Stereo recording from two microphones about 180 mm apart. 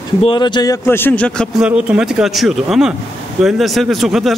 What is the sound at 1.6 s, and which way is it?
A man's voice, 5° right (ahead or behind).